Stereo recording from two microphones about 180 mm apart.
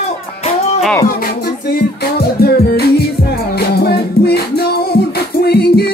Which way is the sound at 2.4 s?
60° left (ahead or behind).